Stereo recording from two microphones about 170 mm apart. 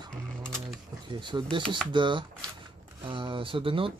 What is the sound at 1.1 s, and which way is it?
Speech, 25° right (ahead or behind).